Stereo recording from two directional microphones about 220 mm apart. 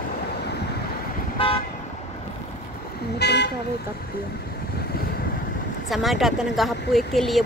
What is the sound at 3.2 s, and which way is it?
Speech, 50° left (ahead or behind).